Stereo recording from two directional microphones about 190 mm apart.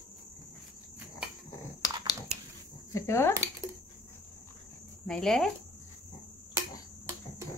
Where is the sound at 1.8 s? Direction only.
20° left (ahead or behind).